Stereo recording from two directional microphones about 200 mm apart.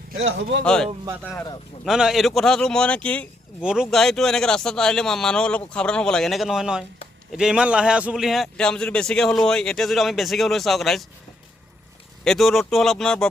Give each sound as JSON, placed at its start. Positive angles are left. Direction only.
{"t": 0.3, "sound": "speech", "side_deg": -65}
{"t": 0.6, "sound": "speech", "side_deg": 5}
{"t": 1.8, "sound": "speech", "side_deg": 0}
{"t": 3.6, "sound": "speech", "side_deg": -5}
{"t": 12.2, "sound": "speech", "side_deg": 0}